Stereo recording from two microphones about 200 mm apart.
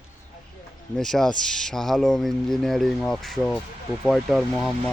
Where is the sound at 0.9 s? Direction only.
Centre (ahead or behind).